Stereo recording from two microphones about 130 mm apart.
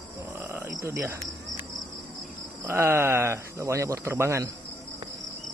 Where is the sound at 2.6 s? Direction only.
15° right (ahead or behind).